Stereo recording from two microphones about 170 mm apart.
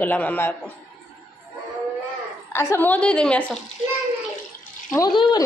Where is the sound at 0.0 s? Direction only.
10° left (ahead or behind).